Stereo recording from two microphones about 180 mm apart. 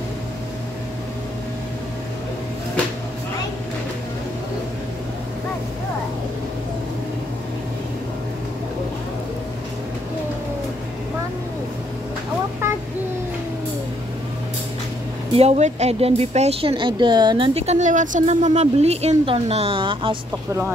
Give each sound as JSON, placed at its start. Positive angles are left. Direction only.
{"t": 15.3, "sound": "speech", "side_deg": -35}
{"t": 17.6, "sound": "speech", "side_deg": -40}